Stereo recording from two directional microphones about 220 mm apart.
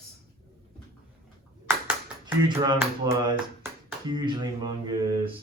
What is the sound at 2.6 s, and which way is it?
Speech, 20° right (ahead or behind).